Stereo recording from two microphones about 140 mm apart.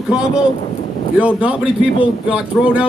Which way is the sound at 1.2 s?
10° right (ahead or behind).